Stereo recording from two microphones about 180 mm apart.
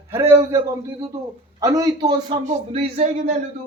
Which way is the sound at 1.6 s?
20° right (ahead or behind).